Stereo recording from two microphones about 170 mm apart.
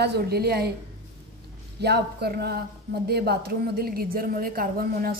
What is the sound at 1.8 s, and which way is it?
A woman's voice, 70° right (ahead or behind).